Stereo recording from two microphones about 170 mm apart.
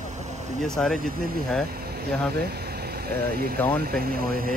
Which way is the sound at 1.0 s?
60° right (ahead or behind).